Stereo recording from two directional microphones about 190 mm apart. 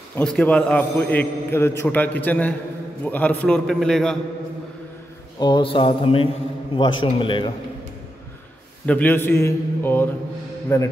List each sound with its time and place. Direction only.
0.1 s a man's voice: 5° left (ahead or behind)
5.4 s a man's voice: 25° left (ahead or behind)
8.8 s a man's voice: 10° left (ahead or behind)